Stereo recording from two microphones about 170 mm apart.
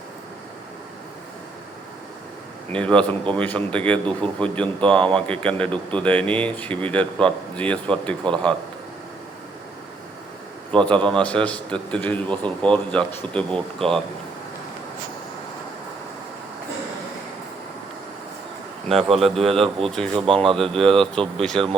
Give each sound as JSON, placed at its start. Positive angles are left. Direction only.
{"t": 2.6, "sound": "speech", "side_deg": 5}
{"t": 10.7, "sound": "speech", "side_deg": 5}
{"t": 18.9, "sound": "speech", "side_deg": 0}
{"t": 20.1, "sound": "speech", "side_deg": -30}
{"t": 20.4, "sound": "speech", "side_deg": 0}